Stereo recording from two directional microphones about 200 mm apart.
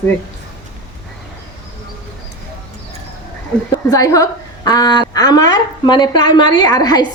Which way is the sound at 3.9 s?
15° left (ahead or behind).